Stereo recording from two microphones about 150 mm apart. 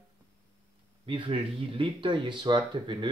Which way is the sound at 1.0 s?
35° right (ahead or behind).